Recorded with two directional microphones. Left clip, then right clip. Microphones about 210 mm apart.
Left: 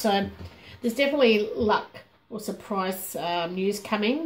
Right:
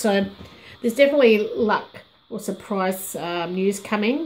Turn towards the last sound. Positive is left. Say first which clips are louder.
# right 4 dB
turn(degrees=-30)  # may be behind; listen again after turning